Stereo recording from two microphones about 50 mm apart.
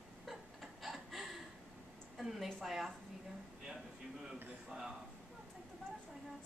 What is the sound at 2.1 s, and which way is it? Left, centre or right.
Speech, centre.